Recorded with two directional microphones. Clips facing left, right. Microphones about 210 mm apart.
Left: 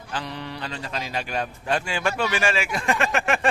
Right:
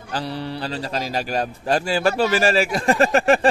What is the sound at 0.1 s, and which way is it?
Speech, 35° right (ahead or behind).